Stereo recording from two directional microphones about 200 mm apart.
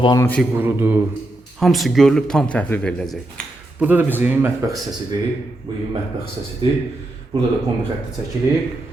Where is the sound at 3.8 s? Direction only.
10° right (ahead or behind).